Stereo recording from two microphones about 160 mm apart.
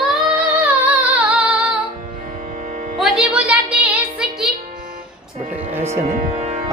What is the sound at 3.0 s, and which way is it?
Music, 5° right (ahead or behind).